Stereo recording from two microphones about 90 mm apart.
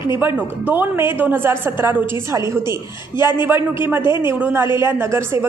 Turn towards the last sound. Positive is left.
turn(degrees=-30)  # may be behind; listen again after turning